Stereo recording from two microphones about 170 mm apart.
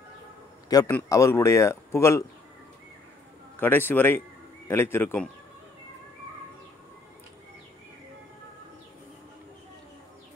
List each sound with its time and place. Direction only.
0.7 s a man's voice: 20° left (ahead or behind)
3.5 s speech: 10° left (ahead or behind)